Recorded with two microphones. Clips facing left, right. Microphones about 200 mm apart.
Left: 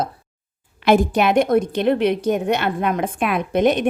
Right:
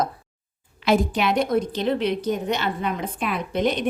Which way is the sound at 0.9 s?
50° left (ahead or behind).